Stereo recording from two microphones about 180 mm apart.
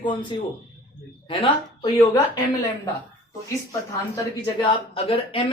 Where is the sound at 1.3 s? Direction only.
30° left (ahead or behind).